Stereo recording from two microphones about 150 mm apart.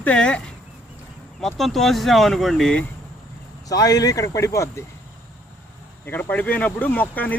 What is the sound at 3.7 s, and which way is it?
Speech, 25° left (ahead or behind).